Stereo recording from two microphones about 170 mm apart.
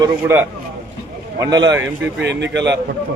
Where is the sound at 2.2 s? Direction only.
90° right.